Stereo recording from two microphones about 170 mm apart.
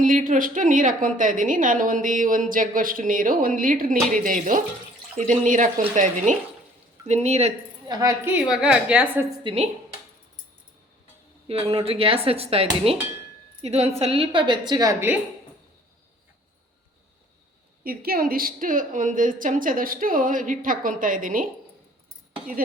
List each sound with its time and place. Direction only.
0.0 s a woman's voice: 50° right (ahead or behind)
7.9 s a woman's voice: 20° right (ahead or behind)
8.6 s a woman's voice: 5° right (ahead or behind)
9.4 s a woman's voice: 30° right (ahead or behind)
11.4 s speech: 35° right (ahead or behind)
17.8 s a woman's voice: 60° right (ahead or behind)